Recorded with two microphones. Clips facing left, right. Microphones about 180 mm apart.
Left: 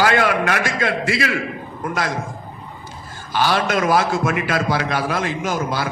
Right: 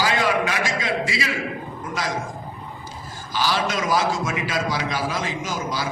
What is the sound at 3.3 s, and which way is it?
A man's voice, 60° left (ahead or behind).